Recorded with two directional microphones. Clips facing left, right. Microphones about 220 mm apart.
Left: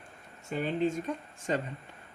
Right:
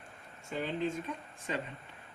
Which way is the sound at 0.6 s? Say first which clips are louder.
Left 5 dB; 45° left (ahead or behind).